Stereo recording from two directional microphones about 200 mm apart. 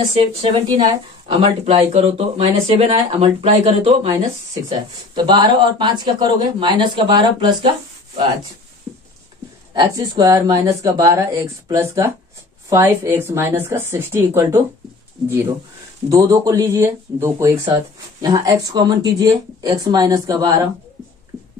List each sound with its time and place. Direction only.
0.1 s speech: 25° right (ahead or behind)
4.6 s speech: 20° right (ahead or behind)
9.8 s speech: 20° right (ahead or behind)
16.1 s speech: 15° right (ahead or behind)